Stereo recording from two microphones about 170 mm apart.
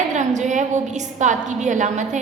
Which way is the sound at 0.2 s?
45° right (ahead or behind).